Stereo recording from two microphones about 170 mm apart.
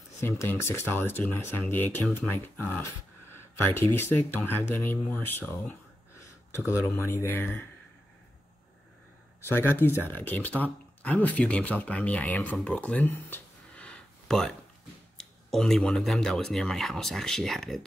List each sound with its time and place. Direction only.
0.2 s speech: 15° left (ahead or behind)
6.7 s speech: 20° left (ahead or behind)
9.5 s speech: 15° left (ahead or behind)